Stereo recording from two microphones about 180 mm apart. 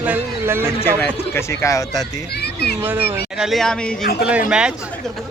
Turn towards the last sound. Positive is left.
turn(degrees=-5)  # may be behind; listen again after turning